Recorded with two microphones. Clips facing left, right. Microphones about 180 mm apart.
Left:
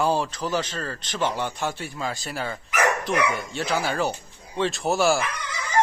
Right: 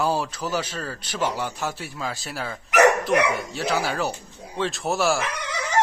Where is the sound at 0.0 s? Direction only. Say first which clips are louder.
Left 1 dB; 5° right (ahead or behind).